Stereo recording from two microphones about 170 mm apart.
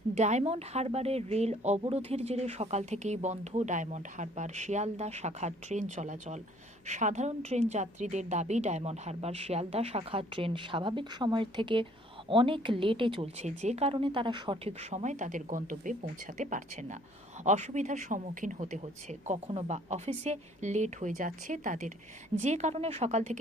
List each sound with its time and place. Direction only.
0.1 s speech: 40° right (ahead or behind)